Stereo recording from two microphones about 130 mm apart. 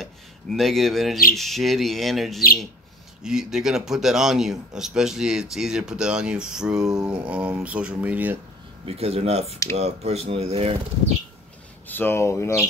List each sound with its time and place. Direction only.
0.0 s speech: centre (ahead or behind)
8.8 s speech: 50° right (ahead or behind)
11.9 s speech: 15° left (ahead or behind)